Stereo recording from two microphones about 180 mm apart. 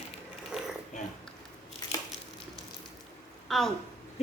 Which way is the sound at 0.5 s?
5° right (ahead or behind).